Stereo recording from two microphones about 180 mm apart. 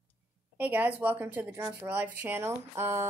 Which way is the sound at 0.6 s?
10° right (ahead or behind).